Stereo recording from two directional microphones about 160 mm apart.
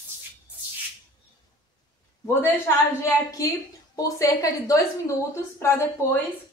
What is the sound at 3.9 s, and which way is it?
A woman's voice, 20° left (ahead or behind).